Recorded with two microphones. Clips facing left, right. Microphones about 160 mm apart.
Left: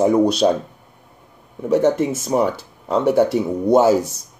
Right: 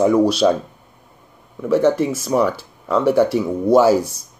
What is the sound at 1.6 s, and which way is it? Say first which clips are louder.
A man's voice: right 1 dB; 20° left (ahead or behind).